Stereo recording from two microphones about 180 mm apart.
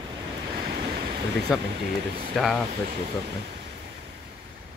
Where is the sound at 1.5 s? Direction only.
Centre (ahead or behind).